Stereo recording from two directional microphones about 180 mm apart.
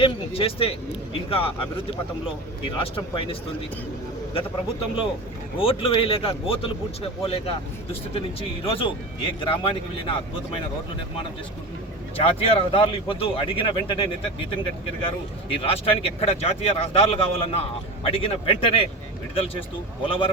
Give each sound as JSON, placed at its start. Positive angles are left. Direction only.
{"t": 0.0, "sound": "speech", "side_deg": 30}
{"t": 2.6, "sound": "speech", "side_deg": 30}
{"t": 5.5, "sound": "speech", "side_deg": 30}
{"t": 12.1, "sound": "speech", "side_deg": 30}